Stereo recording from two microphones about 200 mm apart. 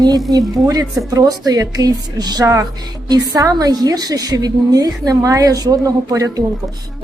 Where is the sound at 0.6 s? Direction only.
20° right (ahead or behind).